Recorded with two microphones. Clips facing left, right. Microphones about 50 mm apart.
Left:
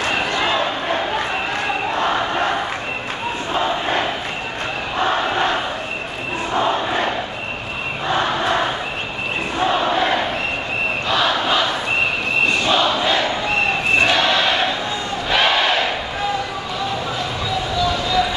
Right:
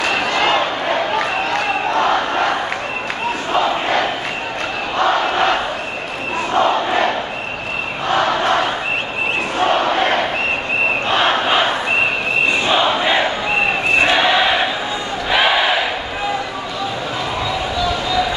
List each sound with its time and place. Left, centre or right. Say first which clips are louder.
0.0 s a sound: right 3 dB; right
1.1 s crowd: right 3 dB; right
3.5 s crowd: right 3 dB; right
6.5 s battle cry: right 4 dB; right
8.1 s battle cry: right 3 dB; right
11.1 s battle cry: right 1 dB; right
12.6 s battle cry: right 2 dB; centre
14.0 s choir: right 4 dB; centre
15.2 s a sound: right 2 dB; centre